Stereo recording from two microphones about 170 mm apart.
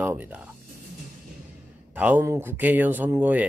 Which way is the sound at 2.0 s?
10° right (ahead or behind).